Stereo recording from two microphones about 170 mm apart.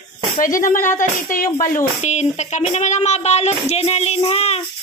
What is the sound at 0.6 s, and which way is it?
Speech, 50° left (ahead or behind).